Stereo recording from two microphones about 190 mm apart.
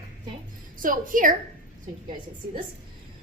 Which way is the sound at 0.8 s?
45° right (ahead or behind).